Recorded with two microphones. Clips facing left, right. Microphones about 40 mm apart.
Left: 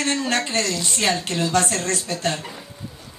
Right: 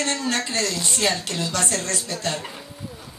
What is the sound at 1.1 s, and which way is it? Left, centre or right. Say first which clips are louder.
Speech: left 5 dB; left.